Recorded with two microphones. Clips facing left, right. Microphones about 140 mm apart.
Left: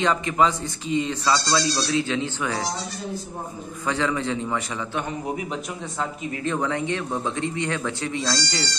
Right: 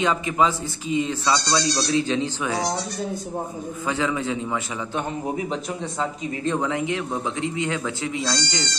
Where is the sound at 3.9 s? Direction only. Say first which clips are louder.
Even; 5° right (ahead or behind).